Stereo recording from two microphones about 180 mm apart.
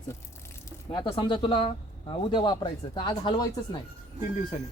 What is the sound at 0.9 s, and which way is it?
Speech, 25° left (ahead or behind).